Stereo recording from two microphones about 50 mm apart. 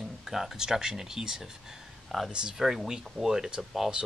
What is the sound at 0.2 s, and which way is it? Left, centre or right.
Speech, centre.